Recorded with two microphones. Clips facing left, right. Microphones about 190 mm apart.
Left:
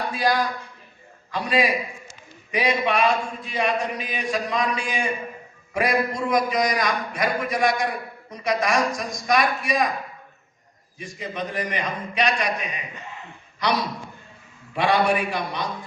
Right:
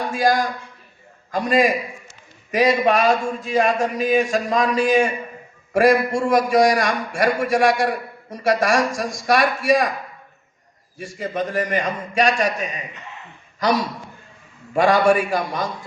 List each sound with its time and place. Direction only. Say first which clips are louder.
0.1 s a man's voice: right 4 dB; 45° right (ahead or behind)
10.9 s a man's voice: right 6 dB; 45° right (ahead or behind)